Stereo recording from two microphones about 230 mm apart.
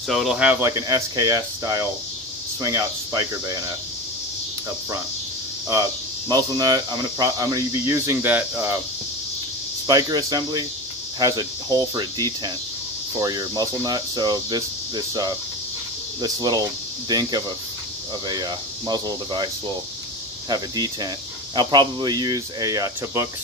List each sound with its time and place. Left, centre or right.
0.1 s speech: centre
5.7 s speech: centre
9.8 s speech: centre